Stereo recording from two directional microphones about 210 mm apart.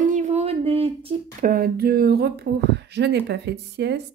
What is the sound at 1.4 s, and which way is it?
Speech, 45° right (ahead or behind).